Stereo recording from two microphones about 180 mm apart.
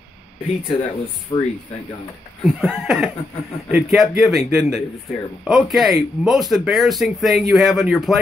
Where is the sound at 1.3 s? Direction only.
25° left (ahead or behind).